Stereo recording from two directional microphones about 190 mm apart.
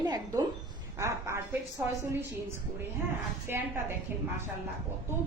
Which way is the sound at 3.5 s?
10° right (ahead or behind).